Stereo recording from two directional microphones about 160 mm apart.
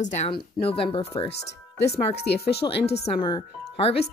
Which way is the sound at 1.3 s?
90° left.